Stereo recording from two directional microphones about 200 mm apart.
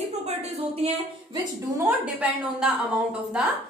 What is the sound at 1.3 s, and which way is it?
A woman's voice, 10° right (ahead or behind).